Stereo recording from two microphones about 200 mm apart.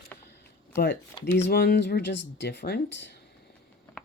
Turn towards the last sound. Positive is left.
turn(degrees=60)  # may be behind; listen again after turning